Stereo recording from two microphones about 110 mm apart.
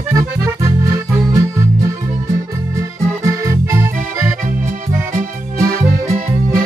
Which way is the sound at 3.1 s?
25° right (ahead or behind).